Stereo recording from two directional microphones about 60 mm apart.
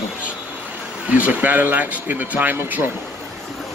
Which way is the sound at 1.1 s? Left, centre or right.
Right.